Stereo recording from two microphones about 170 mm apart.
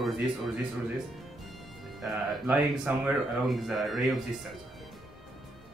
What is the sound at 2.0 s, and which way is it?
Speech, 10° right (ahead or behind).